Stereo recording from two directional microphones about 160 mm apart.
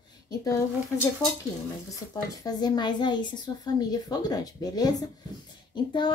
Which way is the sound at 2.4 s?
25° left (ahead or behind).